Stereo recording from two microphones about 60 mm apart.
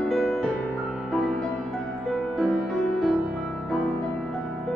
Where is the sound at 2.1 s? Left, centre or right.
Centre.